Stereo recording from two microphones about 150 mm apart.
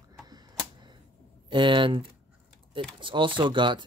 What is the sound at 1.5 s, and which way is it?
Speech, 35° right (ahead or behind).